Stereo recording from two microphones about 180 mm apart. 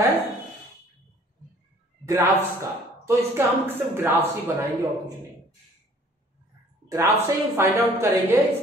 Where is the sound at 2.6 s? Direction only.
15° right (ahead or behind).